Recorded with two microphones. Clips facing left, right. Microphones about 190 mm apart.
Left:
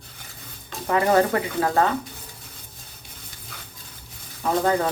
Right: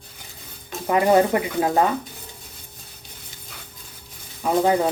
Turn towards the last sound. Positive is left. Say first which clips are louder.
# right 2 dB
turn(degrees=-10)  # may be behind; listen again after turning